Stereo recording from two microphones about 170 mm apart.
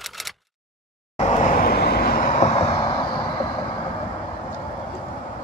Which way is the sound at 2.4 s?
40° left (ahead or behind).